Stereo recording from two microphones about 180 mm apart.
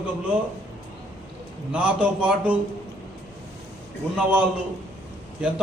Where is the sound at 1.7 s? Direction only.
5° right (ahead or behind).